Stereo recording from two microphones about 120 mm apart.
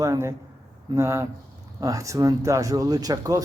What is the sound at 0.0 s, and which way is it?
Speech, 25° right (ahead or behind).